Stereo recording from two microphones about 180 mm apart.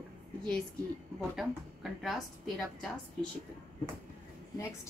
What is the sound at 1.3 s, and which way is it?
A woman's voice, centre (ahead or behind).